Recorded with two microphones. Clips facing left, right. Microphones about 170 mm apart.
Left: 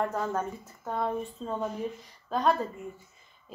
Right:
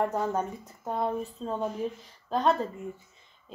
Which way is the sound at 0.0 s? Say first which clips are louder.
Right 2 dB; 15° right (ahead or behind).